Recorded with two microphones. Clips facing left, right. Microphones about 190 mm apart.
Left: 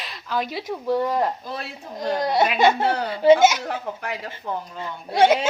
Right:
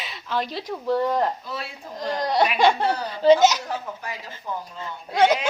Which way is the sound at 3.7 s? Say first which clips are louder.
Left 3 dB; 65° left (ahead or behind).